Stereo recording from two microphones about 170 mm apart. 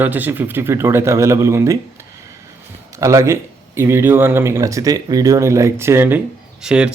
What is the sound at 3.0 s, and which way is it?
Speech, 15° right (ahead or behind).